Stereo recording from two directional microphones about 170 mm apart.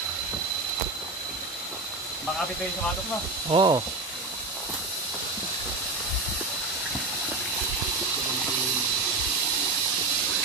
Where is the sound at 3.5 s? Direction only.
25° right (ahead or behind).